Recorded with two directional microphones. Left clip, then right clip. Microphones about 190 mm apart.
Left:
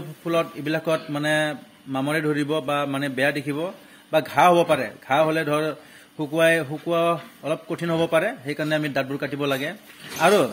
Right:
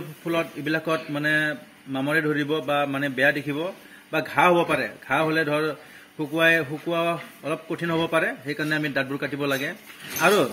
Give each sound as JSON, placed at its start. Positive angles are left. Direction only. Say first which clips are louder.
{"t": 0.2, "sound": "a man's voice", "louder": "left 3 dB", "side_deg": 45}